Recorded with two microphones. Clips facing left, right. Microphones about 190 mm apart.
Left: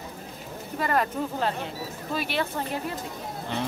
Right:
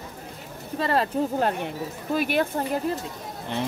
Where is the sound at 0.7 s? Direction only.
30° right (ahead or behind).